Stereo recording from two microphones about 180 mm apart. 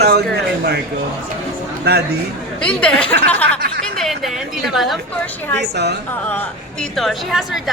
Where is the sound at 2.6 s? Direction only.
5° left (ahead or behind).